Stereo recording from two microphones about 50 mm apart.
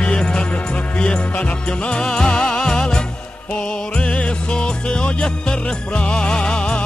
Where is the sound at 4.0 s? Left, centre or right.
Left.